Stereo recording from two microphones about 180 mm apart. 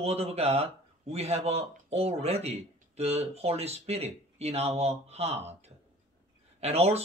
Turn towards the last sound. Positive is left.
turn(degrees=-35)  # may be behind; listen again after turning